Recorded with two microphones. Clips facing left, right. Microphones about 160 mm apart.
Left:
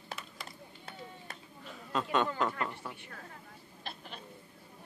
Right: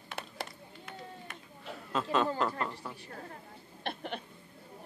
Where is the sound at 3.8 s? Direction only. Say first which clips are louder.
Right 9 dB; 65° right (ahead or behind).